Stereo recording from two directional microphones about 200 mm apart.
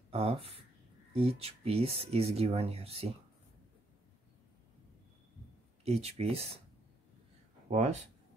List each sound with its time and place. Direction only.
0.1 s speech: 30° right (ahead or behind)
5.9 s speech: 30° right (ahead or behind)
7.7 s speech: 35° right (ahead or behind)